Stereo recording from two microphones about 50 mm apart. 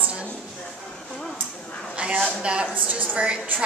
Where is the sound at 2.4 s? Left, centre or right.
Right.